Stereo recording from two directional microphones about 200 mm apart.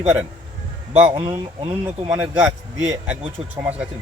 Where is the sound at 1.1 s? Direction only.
20° right (ahead or behind).